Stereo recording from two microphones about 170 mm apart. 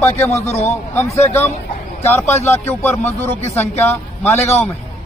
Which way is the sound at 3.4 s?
40° left (ahead or behind).